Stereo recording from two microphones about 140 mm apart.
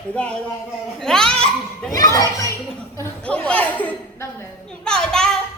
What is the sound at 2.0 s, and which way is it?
Children playing, 25° left (ahead or behind).